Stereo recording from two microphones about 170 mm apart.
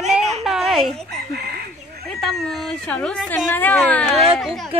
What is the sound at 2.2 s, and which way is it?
A woman's voice, centre (ahead or behind).